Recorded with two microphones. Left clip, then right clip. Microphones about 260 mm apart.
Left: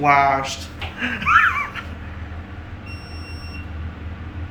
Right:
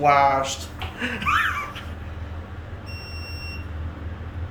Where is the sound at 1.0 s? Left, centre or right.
Centre.